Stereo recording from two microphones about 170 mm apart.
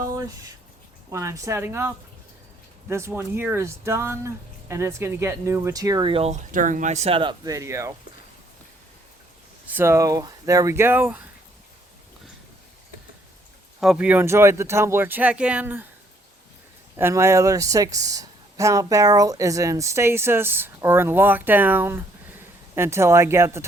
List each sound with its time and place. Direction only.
1.1 s speech: 15° right (ahead or behind)
2.9 s speech: 15° right (ahead or behind)
9.6 s speech: 15° right (ahead or behind)
13.7 s speech: 5° right (ahead or behind)
17.0 s speech: 15° right (ahead or behind)